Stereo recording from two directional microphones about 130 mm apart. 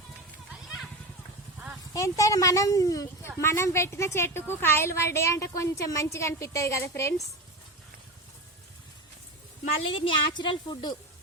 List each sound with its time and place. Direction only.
1.9 s speech: 25° left (ahead or behind)
10.0 s a woman's voice: 40° left (ahead or behind)